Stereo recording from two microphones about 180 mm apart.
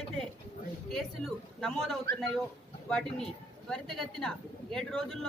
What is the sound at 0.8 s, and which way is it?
A woman's voice, centre (ahead or behind).